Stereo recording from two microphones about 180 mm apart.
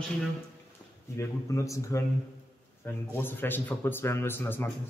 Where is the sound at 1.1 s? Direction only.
15° left (ahead or behind).